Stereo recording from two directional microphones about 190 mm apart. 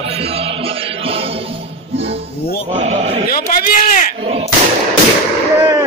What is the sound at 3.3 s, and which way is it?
Speech, 45° left (ahead or behind).